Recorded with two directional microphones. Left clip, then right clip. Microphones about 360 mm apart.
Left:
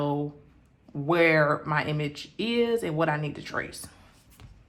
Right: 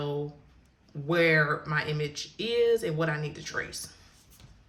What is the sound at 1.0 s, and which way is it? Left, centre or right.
Speech, centre.